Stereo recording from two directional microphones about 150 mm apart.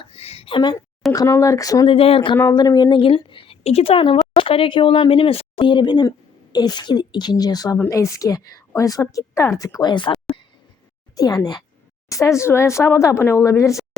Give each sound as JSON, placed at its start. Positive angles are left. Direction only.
{"t": 0.0, "sound": "speech", "side_deg": 40}
{"t": 1.1, "sound": "a woman's voice", "side_deg": 20}
{"t": 1.9, "sound": "a woman's voice", "side_deg": 40}
{"t": 2.3, "sound": "a woman's voice", "side_deg": 25}